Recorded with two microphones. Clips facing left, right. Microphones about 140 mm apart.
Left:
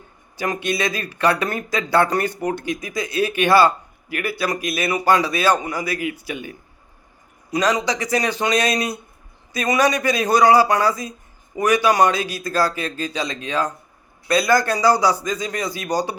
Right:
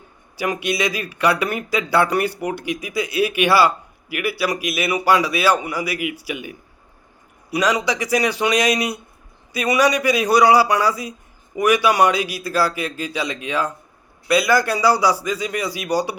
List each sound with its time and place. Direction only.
0.3 s speech: 10° right (ahead or behind)